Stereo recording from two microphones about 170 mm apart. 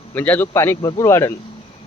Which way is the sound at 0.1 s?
10° left (ahead or behind).